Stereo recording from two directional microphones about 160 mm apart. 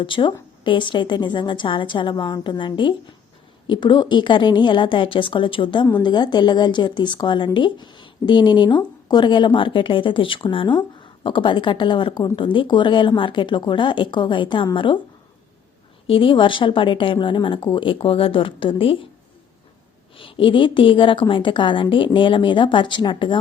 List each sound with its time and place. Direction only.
0.0 s speech: 30° left (ahead or behind)
16.0 s a woman's voice: 35° left (ahead or behind)
20.1 s a woman's voice: 35° left (ahead or behind)